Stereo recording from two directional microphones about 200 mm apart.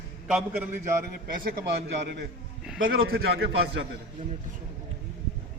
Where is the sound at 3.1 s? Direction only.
55° right (ahead or behind).